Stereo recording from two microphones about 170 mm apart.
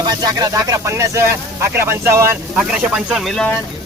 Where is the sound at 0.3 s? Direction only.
20° right (ahead or behind).